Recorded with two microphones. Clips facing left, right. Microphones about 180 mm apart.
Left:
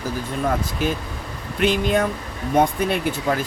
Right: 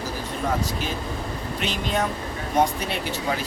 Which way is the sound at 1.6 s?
55° left (ahead or behind).